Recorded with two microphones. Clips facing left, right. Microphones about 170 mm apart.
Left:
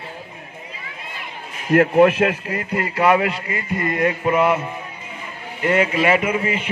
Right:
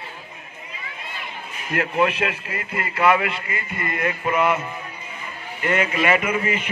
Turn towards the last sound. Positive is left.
turn(degrees=25)  # may be behind; listen again after turning